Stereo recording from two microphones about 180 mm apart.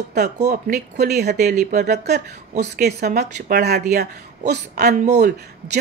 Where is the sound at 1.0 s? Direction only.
65° right (ahead or behind).